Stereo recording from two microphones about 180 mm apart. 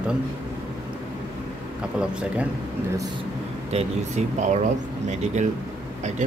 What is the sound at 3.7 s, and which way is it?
Speech, 40° right (ahead or behind).